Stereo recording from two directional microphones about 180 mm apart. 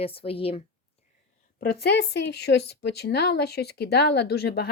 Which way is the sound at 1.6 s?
60° left (ahead or behind).